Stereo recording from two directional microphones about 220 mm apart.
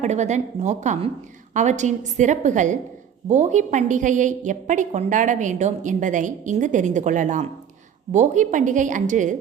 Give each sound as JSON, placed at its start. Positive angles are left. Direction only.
{"t": 0.0, "sound": "a woman's voice", "side_deg": -30}